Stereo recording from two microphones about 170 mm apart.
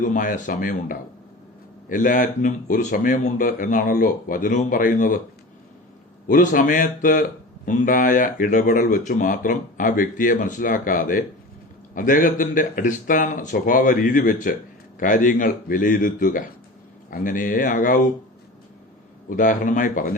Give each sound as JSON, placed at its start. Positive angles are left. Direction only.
{"t": 0.0, "sound": "speech", "side_deg": 50}
{"t": 6.2, "sound": "speech", "side_deg": 50}
{"t": 19.3, "sound": "speech", "side_deg": 50}